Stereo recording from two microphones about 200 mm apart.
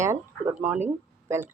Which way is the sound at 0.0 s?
15° right (ahead or behind).